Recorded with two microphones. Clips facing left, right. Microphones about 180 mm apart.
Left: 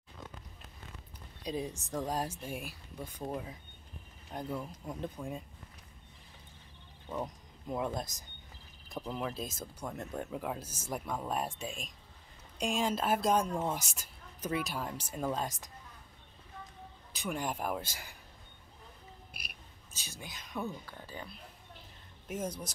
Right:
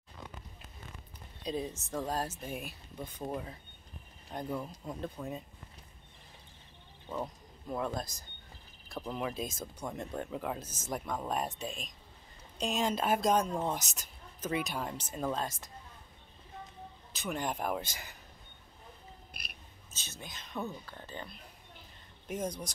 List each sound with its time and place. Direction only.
1.4 s speech: 10° left (ahead or behind)
3.2 s speech: 5° right (ahead or behind)
4.3 s speech: 10° left (ahead or behind)
7.6 s speech: 15° left (ahead or behind)
9.0 s speech: centre (ahead or behind)
17.1 s speech: 10° left (ahead or behind)
19.3 s a sound: 10° left (ahead or behind)
20.1 s speech: 10° left (ahead or behind)